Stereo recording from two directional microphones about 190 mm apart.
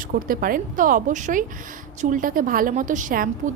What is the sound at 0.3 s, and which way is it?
A woman's voice, 50° right (ahead or behind).